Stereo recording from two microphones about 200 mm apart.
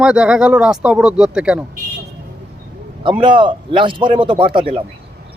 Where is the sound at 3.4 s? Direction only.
25° right (ahead or behind).